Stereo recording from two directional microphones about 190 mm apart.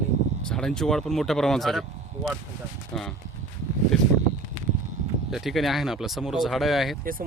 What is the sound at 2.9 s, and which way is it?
Speech, 5° left (ahead or behind).